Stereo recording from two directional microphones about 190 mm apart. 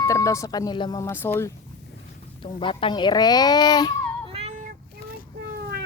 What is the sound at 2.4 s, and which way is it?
Speech, 25° left (ahead or behind).